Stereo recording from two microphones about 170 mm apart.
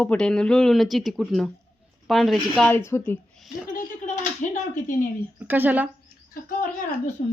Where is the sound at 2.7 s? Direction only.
15° left (ahead or behind).